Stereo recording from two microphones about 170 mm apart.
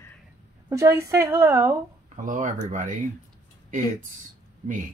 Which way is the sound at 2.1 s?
50° right (ahead or behind).